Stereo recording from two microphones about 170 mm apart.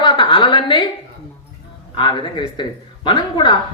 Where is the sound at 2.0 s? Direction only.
25° left (ahead or behind).